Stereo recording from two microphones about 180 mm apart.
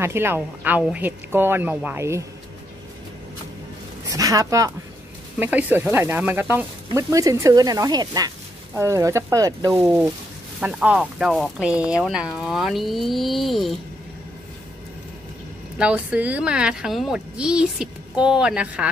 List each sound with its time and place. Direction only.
0.0 s speech: 15° right (ahead or behind)
4.1 s speech: 20° right (ahead or behind); by 13.7 s centre (ahead or behind)
15.8 s speech: 5° right (ahead or behind)